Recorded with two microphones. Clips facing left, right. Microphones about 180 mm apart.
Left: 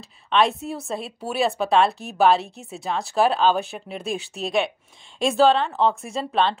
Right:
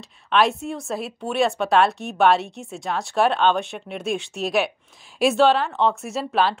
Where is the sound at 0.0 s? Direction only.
Centre (ahead or behind).